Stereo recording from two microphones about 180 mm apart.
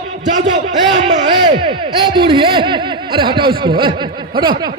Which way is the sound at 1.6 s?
25° right (ahead or behind).